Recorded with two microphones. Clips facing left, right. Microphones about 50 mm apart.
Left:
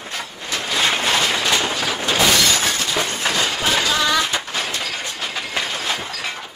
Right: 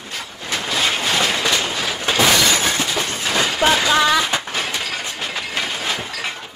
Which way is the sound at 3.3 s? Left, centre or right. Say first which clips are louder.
Right 6 dB; right.